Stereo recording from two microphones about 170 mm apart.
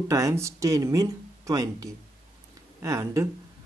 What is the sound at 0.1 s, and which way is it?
Speech, 20° right (ahead or behind).